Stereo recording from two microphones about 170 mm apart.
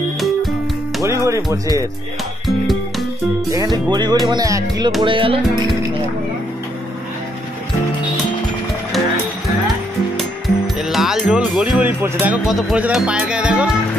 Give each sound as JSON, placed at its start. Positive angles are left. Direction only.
{"t": 1.0, "sound": "speech", "side_deg": -15}
{"t": 2.4, "sound": "music", "side_deg": 0}
{"t": 3.4, "sound": "speech", "side_deg": -20}
{"t": 10.1, "sound": "speech", "side_deg": 0}